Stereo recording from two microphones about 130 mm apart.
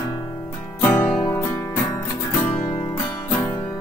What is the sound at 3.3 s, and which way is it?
Music, 10° left (ahead or behind).